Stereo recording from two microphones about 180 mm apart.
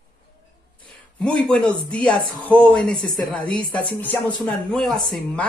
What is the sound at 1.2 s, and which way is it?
Speech, 5° left (ahead or behind).